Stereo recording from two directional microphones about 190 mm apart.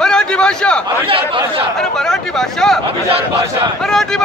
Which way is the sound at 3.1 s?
30° right (ahead or behind).